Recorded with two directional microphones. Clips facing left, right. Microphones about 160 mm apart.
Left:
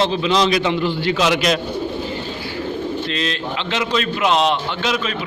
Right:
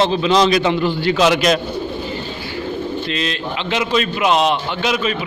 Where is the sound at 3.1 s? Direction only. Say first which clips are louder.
Right 1 dB; 5° right (ahead or behind).